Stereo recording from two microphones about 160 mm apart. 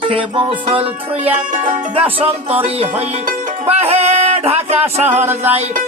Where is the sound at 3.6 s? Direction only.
40° right (ahead or behind).